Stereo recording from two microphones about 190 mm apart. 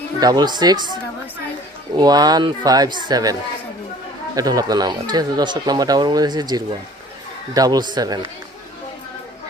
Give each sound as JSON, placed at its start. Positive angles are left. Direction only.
{"t": 0.2, "sound": "speech", "side_deg": -20}
{"t": 2.0, "sound": "speech", "side_deg": -20}
{"t": 4.4, "sound": "speech", "side_deg": -20}